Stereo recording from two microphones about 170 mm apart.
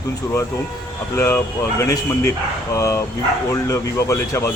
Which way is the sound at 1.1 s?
15° left (ahead or behind).